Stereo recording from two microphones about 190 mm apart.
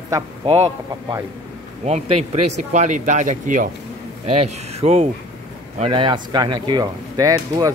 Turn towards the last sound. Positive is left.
turn(degrees=-20)  # may be behind; listen again after turning